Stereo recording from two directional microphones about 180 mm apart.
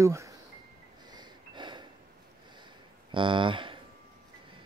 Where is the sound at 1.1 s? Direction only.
25° right (ahead or behind).